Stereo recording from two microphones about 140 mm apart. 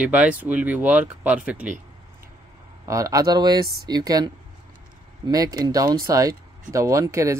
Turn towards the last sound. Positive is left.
turn(degrees=-20)  # may be behind; listen again after turning